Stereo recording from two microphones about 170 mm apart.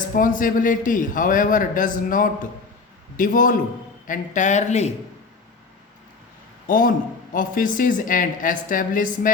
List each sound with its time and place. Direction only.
0.2 s a man's voice: 50° left (ahead or behind)
6.7 s a man's voice: 55° left (ahead or behind)